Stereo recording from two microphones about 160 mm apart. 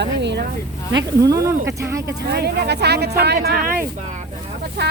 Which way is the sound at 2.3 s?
90° right.